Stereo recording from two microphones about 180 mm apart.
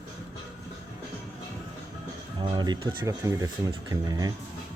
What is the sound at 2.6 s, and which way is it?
Speech, 25° right (ahead or behind).